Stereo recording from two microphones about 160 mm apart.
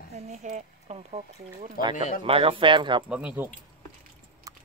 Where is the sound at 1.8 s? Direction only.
65° left (ahead or behind).